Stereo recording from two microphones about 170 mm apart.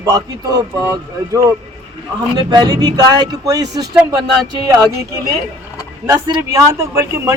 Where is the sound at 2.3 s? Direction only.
25° right (ahead or behind).